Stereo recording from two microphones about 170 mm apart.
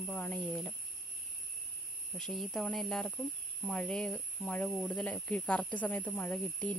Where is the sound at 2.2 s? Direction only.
Centre (ahead or behind).